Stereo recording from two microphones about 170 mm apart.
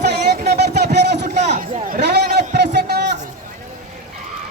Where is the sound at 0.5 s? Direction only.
70° right (ahead or behind).